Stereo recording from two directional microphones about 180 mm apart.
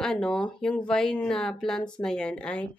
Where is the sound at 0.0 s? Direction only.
5° left (ahead or behind).